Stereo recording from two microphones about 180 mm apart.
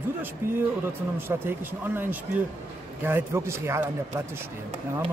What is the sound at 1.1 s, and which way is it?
Speech, 10° right (ahead or behind).